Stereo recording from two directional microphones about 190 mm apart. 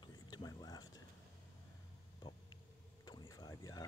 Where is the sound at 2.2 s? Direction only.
25° left (ahead or behind).